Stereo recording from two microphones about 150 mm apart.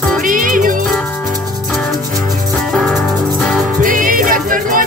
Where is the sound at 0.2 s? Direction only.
65° right (ahead or behind).